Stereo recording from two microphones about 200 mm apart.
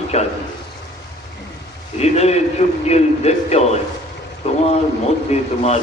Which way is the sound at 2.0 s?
30° left (ahead or behind).